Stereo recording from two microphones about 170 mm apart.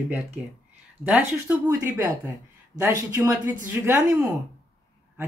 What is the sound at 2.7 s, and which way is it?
Speech, 20° right (ahead or behind).